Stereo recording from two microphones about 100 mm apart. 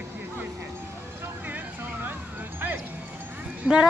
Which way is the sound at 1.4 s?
20° right (ahead or behind).